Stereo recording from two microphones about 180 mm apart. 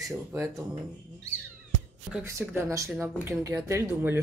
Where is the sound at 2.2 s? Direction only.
15° right (ahead or behind).